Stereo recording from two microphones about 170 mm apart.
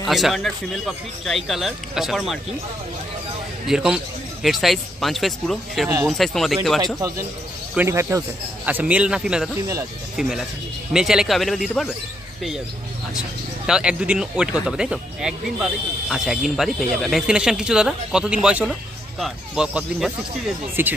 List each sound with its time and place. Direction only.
0.0 s speech: centre (ahead or behind)
3.6 s speech: 5° right (ahead or behind)
7.7 s speech: 15° right (ahead or behind)
13.7 s speech: 5° right (ahead or behind)